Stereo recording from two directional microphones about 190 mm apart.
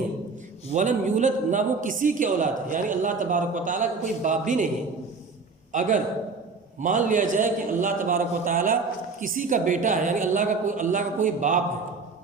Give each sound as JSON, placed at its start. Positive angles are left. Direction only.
{"t": 0.7, "sound": "a man's voice", "side_deg": -40}
{"t": 5.7, "sound": "a man's voice", "side_deg": -40}